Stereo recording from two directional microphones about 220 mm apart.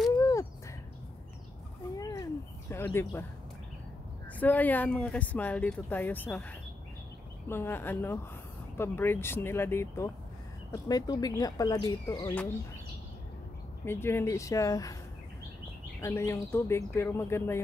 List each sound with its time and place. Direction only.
0.2 s a sound: 15° left (ahead or behind)
2.0 s a sound: 15° left (ahead or behind)
2.7 s speech: 10° left (ahead or behind)
4.3 s speech: 5° left (ahead or behind)
7.4 s speech: 10° left (ahead or behind)
13.8 s speech: 10° left (ahead or behind)
16.0 s speech: 15° left (ahead or behind)